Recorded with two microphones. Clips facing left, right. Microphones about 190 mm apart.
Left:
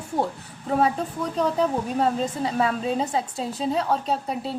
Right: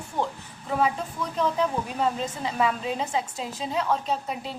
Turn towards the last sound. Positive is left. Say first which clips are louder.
# left 3 dB
turn(degrees=35)  # may be behind; listen again after turning